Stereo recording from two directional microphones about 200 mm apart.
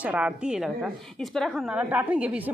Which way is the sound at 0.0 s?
5° right (ahead or behind).